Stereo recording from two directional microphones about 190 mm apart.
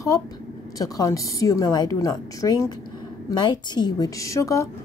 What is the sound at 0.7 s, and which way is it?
A woman's voice, 20° left (ahead or behind).